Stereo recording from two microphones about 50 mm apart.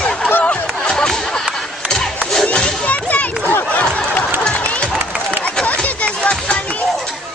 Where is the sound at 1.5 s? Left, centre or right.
Centre.